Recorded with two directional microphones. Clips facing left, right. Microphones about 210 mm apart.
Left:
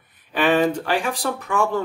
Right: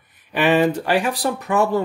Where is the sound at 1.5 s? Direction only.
40° right (ahead or behind).